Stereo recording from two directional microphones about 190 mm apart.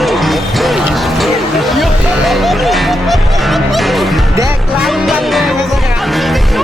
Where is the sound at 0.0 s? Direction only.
Centre (ahead or behind).